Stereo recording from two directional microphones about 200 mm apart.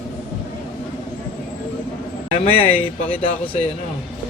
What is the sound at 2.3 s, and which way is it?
Speech, 30° left (ahead or behind).